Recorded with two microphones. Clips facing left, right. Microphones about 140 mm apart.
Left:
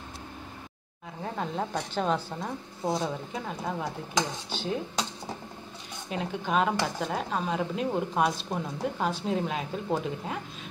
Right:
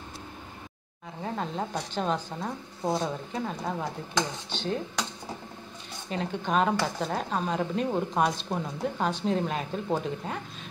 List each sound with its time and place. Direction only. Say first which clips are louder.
1.2 s speech: even; centre (ahead or behind)
6.0 s speech: right 1 dB; 5° left (ahead or behind)